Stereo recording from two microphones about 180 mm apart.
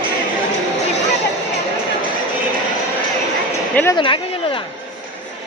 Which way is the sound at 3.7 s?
15° left (ahead or behind).